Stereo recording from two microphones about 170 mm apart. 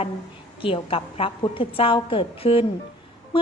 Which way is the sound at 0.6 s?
30° left (ahead or behind).